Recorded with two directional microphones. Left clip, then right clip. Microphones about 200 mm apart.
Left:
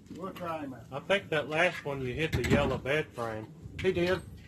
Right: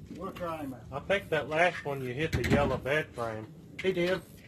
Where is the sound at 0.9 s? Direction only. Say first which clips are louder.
Even; 35° left (ahead or behind).